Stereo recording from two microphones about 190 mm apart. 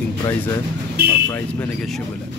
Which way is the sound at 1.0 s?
60° right (ahead or behind).